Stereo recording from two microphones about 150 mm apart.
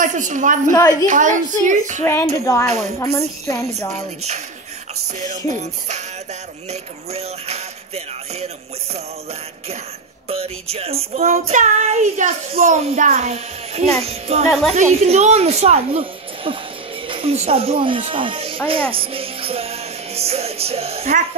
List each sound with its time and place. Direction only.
0.0 s a child's voice: 55° right (ahead or behind)
0.7 s a woman's voice: 25° left (ahead or behind)
1.0 s a child's voice: 60° right (ahead or behind)
2.0 s speech: 20° left (ahead or behind)
5.2 s a woman's voice: 55° right (ahead or behind)
10.2 s a woman's voice: 40° right (ahead or behind)
18.7 s music: 35° right (ahead or behind)